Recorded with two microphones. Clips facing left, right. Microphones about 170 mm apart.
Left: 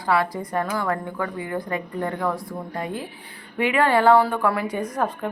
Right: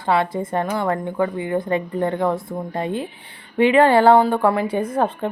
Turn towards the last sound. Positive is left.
turn(degrees=-30)  # may be behind; listen again after turning